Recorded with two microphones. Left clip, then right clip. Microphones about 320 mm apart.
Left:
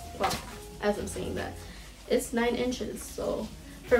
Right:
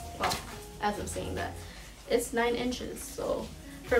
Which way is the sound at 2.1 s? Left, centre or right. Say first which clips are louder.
Even; centre.